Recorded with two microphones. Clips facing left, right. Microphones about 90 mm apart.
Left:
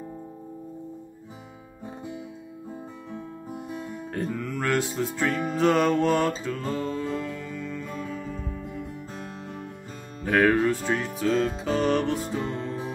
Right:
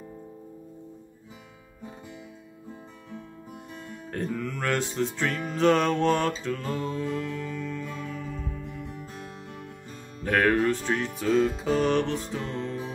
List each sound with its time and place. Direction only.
3.5 s music: 10° left (ahead or behind)
9.1 s music: 35° left (ahead or behind)
10.2 s music: 5° left (ahead or behind)